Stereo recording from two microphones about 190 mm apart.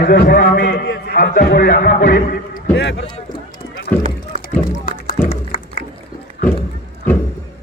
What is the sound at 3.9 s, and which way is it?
Speech, 10° left (ahead or behind).